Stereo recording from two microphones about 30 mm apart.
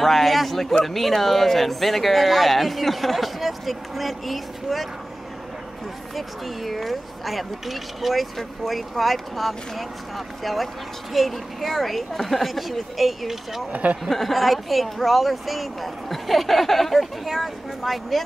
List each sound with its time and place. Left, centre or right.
0.0 s a man's voice: centre
6.1 s speech: centre
13.7 s speech: right
14.0 s speech: centre